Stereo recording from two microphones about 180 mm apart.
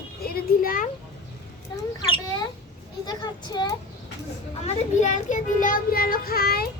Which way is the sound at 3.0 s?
25° left (ahead or behind).